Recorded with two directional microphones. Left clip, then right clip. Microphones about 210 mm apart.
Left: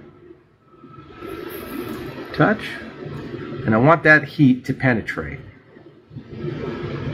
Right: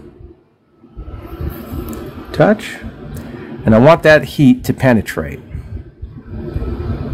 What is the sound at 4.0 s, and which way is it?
Speech, 60° right (ahead or behind).